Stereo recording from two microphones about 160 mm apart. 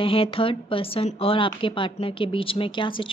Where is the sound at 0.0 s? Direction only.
35° left (ahead or behind).